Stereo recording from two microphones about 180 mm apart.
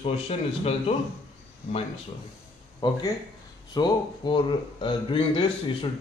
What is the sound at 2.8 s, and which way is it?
A man's voice, 25° left (ahead or behind).